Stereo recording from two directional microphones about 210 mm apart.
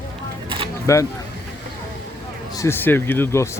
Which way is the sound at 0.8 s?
15° left (ahead or behind).